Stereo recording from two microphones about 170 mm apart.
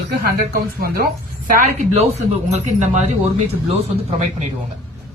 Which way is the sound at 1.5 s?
45° right (ahead or behind).